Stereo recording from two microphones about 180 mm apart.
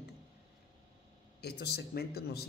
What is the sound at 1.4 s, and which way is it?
Speech, 65° left (ahead or behind).